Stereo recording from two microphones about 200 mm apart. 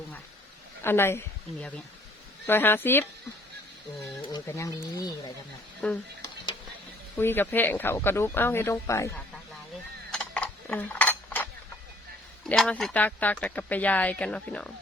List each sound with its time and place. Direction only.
0.8 s speech: 10° left (ahead or behind)
2.5 s speech: 10° left (ahead or behind)
4.3 s speech: 15° left (ahead or behind)
5.8 s speech: 5° left (ahead or behind)
7.2 s speech: 10° left (ahead or behind)
10.1 s mechanisms: 5° left (ahead or behind)
12.5 s speech: 5° left (ahead or behind)